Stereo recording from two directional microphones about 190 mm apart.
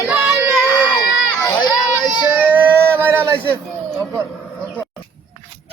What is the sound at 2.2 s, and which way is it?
Speech, 10° right (ahead or behind).